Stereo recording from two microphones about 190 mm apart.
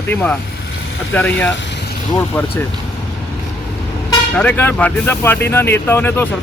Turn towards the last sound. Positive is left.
turn(degrees=10)  # may be behind; listen again after turning